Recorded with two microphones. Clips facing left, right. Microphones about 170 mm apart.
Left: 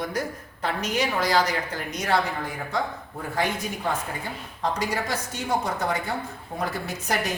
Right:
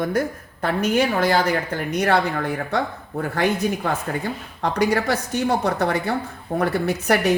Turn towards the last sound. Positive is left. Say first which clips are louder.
# right 8 dB
turn(degrees=-65)  # may be behind; listen again after turning